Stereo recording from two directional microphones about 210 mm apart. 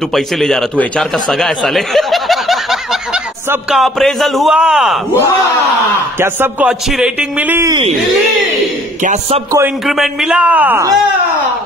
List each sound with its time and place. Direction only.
0.1 s a man's voice: centre (ahead or behind)
9.0 s a man's voice: 35° right (ahead or behind)
9.8 s a man's voice: centre (ahead or behind)